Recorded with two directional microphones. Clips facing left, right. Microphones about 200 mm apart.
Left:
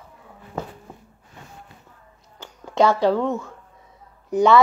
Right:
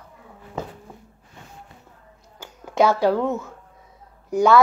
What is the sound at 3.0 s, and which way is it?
Speech, 5° right (ahead or behind).